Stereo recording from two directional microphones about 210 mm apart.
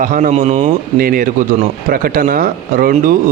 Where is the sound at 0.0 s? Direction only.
40° right (ahead or behind).